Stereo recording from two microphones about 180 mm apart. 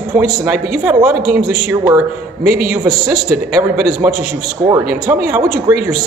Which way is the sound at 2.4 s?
55° right (ahead or behind).